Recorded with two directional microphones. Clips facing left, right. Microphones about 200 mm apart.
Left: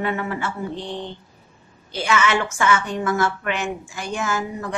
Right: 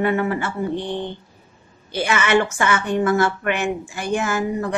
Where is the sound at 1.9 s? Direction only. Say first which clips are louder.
Right 3 dB; 55° right (ahead or behind).